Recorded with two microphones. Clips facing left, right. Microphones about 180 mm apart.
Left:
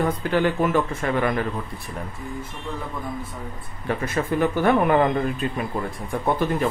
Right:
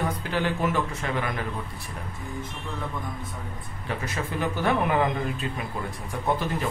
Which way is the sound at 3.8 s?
55° left (ahead or behind).